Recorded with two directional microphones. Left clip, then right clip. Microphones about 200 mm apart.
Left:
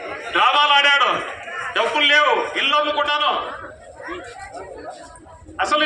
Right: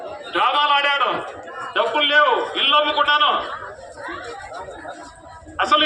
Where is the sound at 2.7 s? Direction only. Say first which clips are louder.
Right 3 dB; 20° left (ahead or behind).